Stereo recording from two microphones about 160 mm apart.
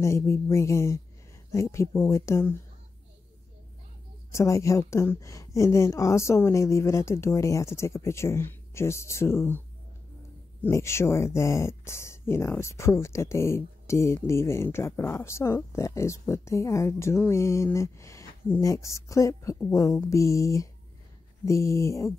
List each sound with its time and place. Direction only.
0.0 s speech: 15° left (ahead or behind)
4.3 s speech: 20° left (ahead or behind)
10.6 s speech: 15° left (ahead or behind)